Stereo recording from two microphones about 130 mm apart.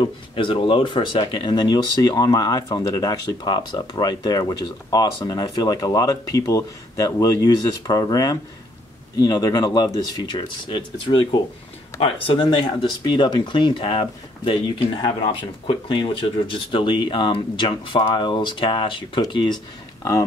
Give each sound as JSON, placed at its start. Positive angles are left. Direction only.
{"t": 0.4, "sound": "speech", "side_deg": 40}